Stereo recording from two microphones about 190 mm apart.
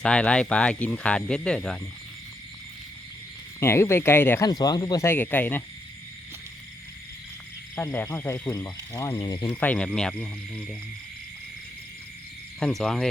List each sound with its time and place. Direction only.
0.0 s speech: 5° left (ahead or behind)
3.6 s speech: 15° left (ahead or behind)
7.8 s speech: 15° left (ahead or behind)
9.6 s speech: 5° left (ahead or behind)
12.5 s speech: 5° left (ahead or behind)